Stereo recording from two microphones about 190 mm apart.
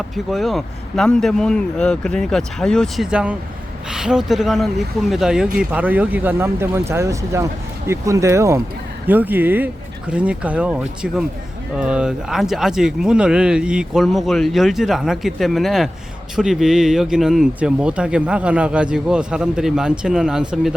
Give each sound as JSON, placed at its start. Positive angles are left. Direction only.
{"t": 0.3, "sound": "speech", "side_deg": 0}